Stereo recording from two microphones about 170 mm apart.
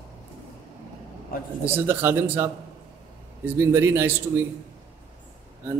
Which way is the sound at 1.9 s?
15° right (ahead or behind).